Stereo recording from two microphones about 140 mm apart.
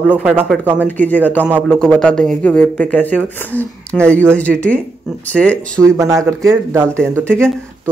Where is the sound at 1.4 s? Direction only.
5° right (ahead or behind).